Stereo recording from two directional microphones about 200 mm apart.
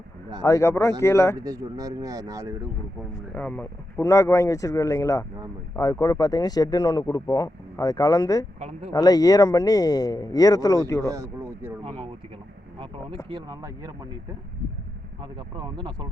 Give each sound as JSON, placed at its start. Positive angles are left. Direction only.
{"t": 0.4, "sound": "speech", "side_deg": 15}
{"t": 1.4, "sound": "speech", "side_deg": -15}
{"t": 3.3, "sound": "speech", "side_deg": 10}
{"t": 8.5, "sound": "speech", "side_deg": -30}
{"t": 8.9, "sound": "speech", "side_deg": 20}
{"t": 11.1, "sound": "speech", "side_deg": -15}
{"t": 13.2, "sound": "speech", "side_deg": -20}
{"t": 15.2, "sound": "speech", "side_deg": -25}